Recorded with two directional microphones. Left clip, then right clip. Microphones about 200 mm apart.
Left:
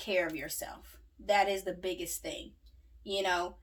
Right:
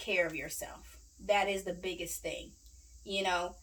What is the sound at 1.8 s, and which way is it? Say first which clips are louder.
Speech: left 1 dB; 30° left (ahead or behind).